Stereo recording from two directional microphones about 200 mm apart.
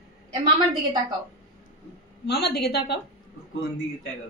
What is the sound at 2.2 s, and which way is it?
Speech, 55° left (ahead or behind).